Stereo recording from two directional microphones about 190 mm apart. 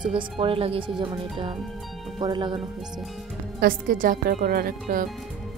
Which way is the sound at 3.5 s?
45° right (ahead or behind).